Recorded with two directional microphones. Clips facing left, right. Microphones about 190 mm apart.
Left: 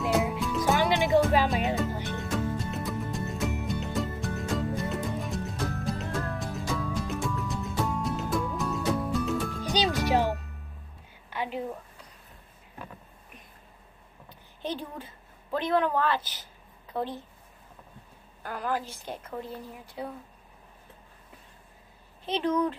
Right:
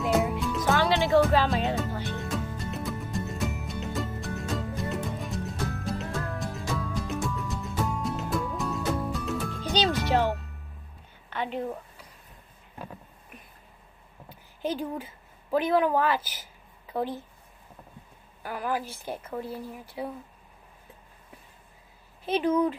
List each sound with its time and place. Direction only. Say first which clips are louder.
0.0 s music: right 1 dB; centre (ahead or behind)
0.7 s music: right 2 dB; 15° left (ahead or behind)
1.5 s music: even; centre (ahead or behind)
9.6 s music: right 3 dB; 15° left (ahead or behind)
10.3 s music: even; centre (ahead or behind)
11.2 s a sound: right 1 dB; 5° left (ahead or behind)
14.6 s a sound: right 4 dB; 10° right (ahead or behind)
15.5 s a woman's voice: right 3 dB; 10° right (ahead or behind)
18.4 s a woman's voice: right 1 dB; 5° right (ahead or behind)
22.2 s a woman's voice: right 3 dB; 10° right (ahead or behind)